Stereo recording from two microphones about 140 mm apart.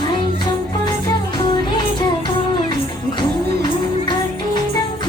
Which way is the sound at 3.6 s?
30° left (ahead or behind).